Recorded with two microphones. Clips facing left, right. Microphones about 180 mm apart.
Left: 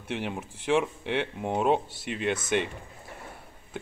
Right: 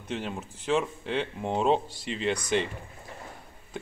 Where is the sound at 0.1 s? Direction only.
15° left (ahead or behind).